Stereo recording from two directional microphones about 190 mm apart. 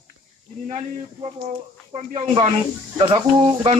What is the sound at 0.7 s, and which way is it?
Speech, 35° right (ahead or behind).